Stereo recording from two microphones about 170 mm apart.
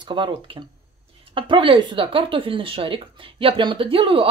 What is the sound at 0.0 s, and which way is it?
Speech, 30° right (ahead or behind).